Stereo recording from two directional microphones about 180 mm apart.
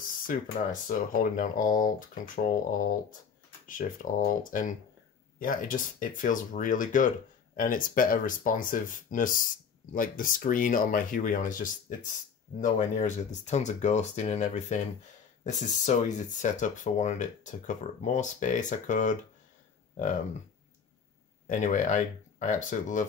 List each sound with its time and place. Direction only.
0.3 s speech: 45° left (ahead or behind)
21.5 s speech: 45° left (ahead or behind)